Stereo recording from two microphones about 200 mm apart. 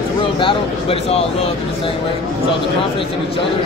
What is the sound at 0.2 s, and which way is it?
Speech, 25° left (ahead or behind).